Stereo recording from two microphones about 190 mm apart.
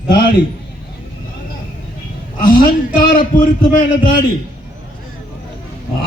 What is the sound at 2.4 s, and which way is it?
Speech, 45° left (ahead or behind).